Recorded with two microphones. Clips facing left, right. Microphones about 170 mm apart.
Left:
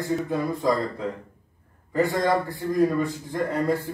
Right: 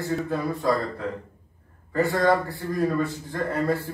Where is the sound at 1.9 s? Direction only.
20° left (ahead or behind).